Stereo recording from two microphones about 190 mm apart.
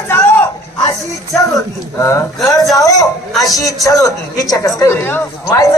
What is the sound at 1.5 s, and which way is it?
A man's voice, 15° left (ahead or behind).